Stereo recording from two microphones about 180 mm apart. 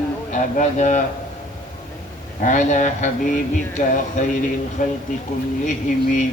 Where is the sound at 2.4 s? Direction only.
45° left (ahead or behind).